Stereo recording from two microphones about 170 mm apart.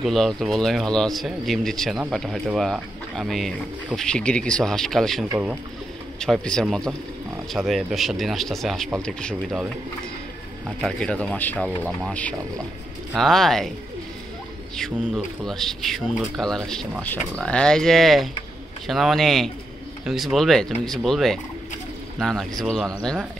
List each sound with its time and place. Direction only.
0.0 s speech: centre (ahead or behind)
5.3 s speech: 10° right (ahead or behind)
6.1 s speech: 5° left (ahead or behind)
10.8 s speech: 5° left (ahead or behind)
14.8 s speech: centre (ahead or behind)